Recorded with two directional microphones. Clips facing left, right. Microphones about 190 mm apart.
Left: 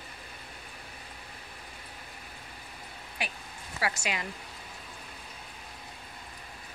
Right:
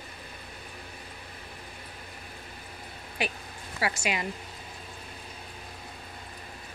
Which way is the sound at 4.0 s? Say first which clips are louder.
Right 4 dB; 15° right (ahead or behind).